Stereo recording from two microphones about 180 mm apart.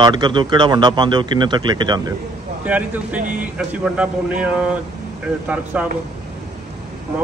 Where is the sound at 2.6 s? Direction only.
10° right (ahead or behind).